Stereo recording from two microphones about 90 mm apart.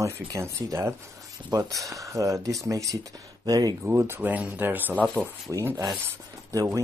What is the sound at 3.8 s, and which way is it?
Speech, 30° right (ahead or behind).